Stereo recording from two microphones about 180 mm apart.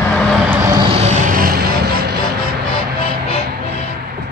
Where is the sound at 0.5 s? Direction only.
10° right (ahead or behind).